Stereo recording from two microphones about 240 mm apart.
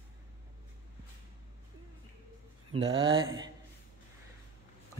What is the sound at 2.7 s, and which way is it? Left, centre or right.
Speech, right.